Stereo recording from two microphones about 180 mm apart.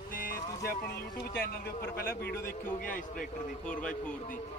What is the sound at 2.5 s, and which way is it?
Speech, 50° left (ahead or behind).